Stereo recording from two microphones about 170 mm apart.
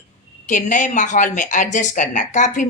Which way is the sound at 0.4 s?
50° left (ahead or behind).